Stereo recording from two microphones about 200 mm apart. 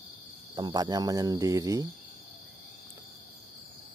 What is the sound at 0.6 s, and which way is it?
Cricket, 20° right (ahead or behind).